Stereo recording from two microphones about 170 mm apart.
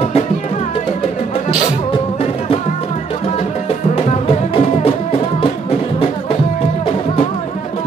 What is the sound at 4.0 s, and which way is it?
Music, 35° left (ahead or behind).